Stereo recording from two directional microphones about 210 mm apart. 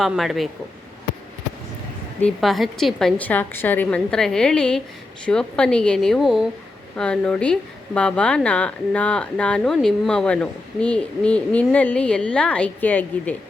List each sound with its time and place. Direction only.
0.0 s a woman's voice: centre (ahead or behind)
2.2 s a woman's voice: centre (ahead or behind)